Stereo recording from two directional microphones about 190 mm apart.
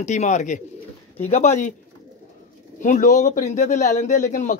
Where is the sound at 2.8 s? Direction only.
40° left (ahead or behind).